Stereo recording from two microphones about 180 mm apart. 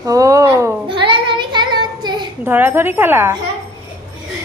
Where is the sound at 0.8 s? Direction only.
30° right (ahead or behind).